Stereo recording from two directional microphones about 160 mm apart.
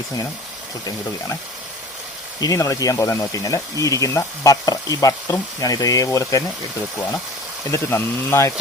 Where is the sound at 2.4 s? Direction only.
20° left (ahead or behind).